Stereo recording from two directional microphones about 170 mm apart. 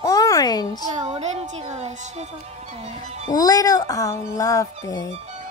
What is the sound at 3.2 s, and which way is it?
A woman's voice, 20° left (ahead or behind).